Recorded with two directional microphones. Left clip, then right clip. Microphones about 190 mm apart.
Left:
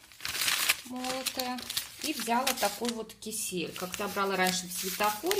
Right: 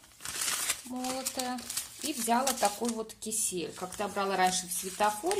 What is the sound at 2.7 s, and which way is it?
Speech, 15° right (ahead or behind).